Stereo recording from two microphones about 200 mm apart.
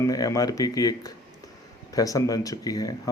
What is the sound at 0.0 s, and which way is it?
Speech, 15° left (ahead or behind).